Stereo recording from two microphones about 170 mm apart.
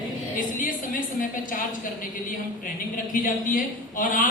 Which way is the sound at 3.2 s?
55° left (ahead or behind).